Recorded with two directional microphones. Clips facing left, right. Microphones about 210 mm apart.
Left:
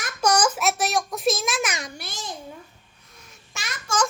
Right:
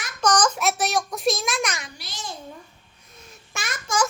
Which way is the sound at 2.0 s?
55° left (ahead or behind).